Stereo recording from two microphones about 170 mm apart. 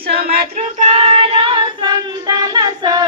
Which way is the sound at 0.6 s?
40° right (ahead or behind).